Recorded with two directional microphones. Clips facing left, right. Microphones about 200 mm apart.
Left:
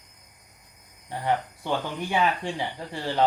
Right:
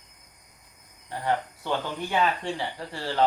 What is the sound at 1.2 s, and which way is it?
Speech, 15° left (ahead or behind).